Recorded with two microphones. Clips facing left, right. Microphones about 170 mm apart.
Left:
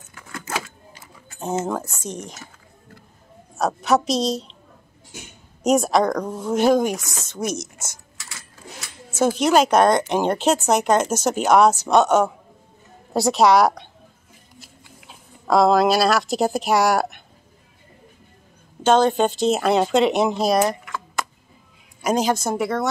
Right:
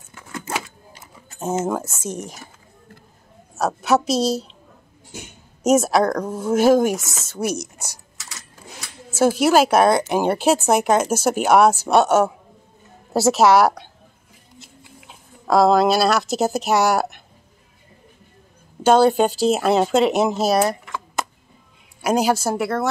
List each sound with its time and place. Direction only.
1.4 s speech: 5° right (ahead or behind)
3.5 s speech: 5° right (ahead or behind)
5.6 s speech: 5° right (ahead or behind)
7.5 s speech: 35° right (ahead or behind)
9.1 s a woman's voice: 10° right (ahead or behind)
15.4 s speech: centre (ahead or behind)
18.8 s a woman's voice: 10° right (ahead or behind)
22.0 s a woman's voice: 10° right (ahead or behind)